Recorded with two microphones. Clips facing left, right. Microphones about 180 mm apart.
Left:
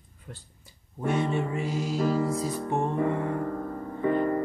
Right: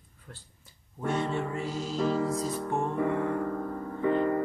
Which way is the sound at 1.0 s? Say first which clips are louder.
Left 3 dB; 15° left (ahead or behind).